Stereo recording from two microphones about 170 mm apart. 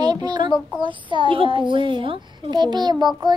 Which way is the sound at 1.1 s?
30° right (ahead or behind).